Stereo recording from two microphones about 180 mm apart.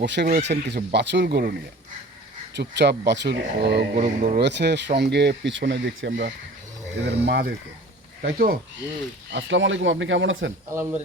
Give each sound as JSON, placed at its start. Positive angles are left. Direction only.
{"t": 0.0, "sound": "speech", "side_deg": -75}
{"t": 2.6, "sound": "speech", "side_deg": -70}
{"t": 4.0, "sound": "speech", "side_deg": -40}
{"t": 4.4, "sound": "speech", "side_deg": -70}
{"t": 7.0, "sound": "speech", "side_deg": -70}
{"t": 8.2, "sound": "speech", "side_deg": -55}
{"t": 9.3, "sound": "speech", "side_deg": -90}
{"t": 10.7, "sound": "speech", "side_deg": -15}